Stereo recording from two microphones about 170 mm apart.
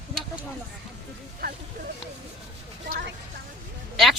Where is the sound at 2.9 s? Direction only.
60° right (ahead or behind).